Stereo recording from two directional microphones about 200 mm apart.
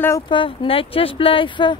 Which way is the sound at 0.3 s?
25° left (ahead or behind).